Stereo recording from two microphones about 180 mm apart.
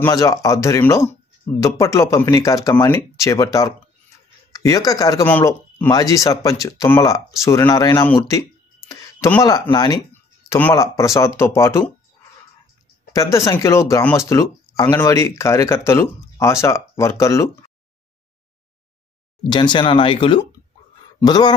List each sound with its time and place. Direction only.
0.0 s speech: 20° left (ahead or behind)
4.5 s speech: 20° left (ahead or behind)
13.1 s speech: 20° left (ahead or behind)
19.5 s speech: 25° left (ahead or behind)